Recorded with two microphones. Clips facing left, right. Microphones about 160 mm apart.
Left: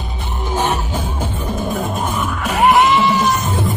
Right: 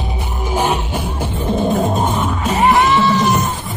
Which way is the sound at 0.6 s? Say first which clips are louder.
Right 2 dB; 10° right (ahead or behind).